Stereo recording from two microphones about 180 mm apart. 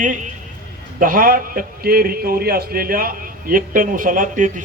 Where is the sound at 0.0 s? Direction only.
45° right (ahead or behind).